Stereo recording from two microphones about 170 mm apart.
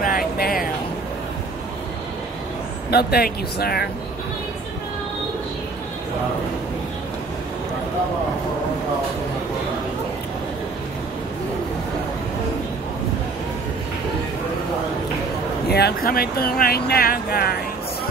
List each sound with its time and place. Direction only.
0.0 s a sound: 55° left (ahead or behind)
2.9 s speech: 65° left (ahead or behind)
15.7 s speech: 65° left (ahead or behind)